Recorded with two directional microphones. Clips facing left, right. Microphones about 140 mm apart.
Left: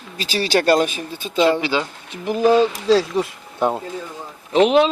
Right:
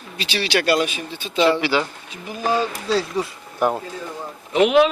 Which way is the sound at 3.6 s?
25° left (ahead or behind).